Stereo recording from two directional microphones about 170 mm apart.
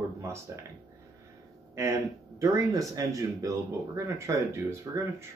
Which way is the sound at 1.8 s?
15° right (ahead or behind).